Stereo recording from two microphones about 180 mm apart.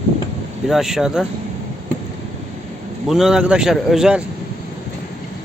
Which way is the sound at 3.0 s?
Centre (ahead or behind).